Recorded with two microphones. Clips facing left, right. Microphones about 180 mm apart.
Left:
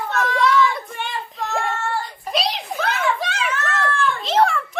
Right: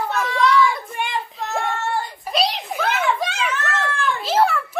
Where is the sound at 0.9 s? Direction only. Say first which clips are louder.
Right 3 dB; 15° right (ahead or behind).